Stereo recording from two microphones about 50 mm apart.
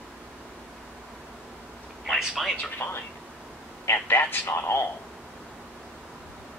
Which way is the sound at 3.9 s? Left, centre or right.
Left.